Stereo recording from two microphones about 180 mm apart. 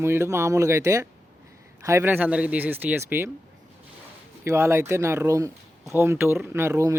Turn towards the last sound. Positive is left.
turn(degrees=-15)  # may be behind; listen again after turning